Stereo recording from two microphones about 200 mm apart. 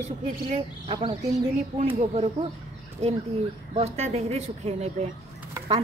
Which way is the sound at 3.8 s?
30° right (ahead or behind).